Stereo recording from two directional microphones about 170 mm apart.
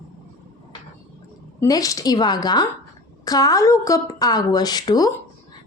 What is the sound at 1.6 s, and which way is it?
A woman's voice, 20° left (ahead or behind).